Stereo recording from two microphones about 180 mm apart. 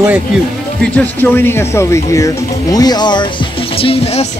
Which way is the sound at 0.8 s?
10° left (ahead or behind).